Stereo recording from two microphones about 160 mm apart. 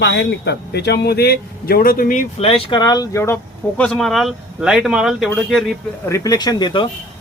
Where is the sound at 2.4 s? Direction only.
35° left (ahead or behind); by 3.3 s 20° left (ahead or behind).